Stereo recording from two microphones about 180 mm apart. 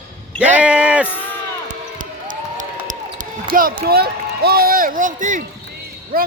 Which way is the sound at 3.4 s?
55° right (ahead or behind).